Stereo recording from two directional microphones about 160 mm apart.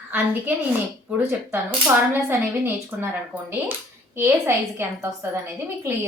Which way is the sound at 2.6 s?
15° right (ahead or behind).